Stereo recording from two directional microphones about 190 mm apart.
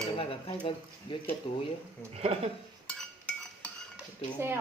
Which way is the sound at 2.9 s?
5° left (ahead or behind).